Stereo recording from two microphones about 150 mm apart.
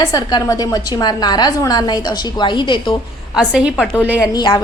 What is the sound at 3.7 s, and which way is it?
Speech, 10° left (ahead or behind).